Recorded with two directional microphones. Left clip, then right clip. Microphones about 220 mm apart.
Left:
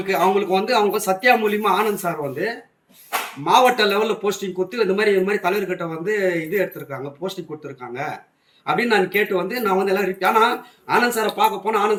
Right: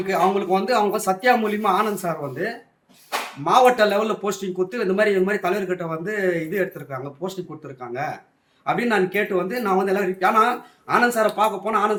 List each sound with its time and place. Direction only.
0.1 s speech: 15° right (ahead or behind)
8.6 s speech: 15° right (ahead or behind)